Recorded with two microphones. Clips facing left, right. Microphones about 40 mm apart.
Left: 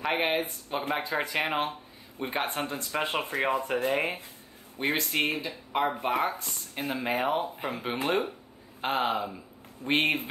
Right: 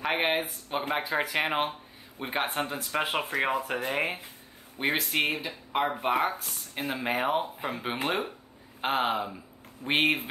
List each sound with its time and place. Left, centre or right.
0.0 s speech: centre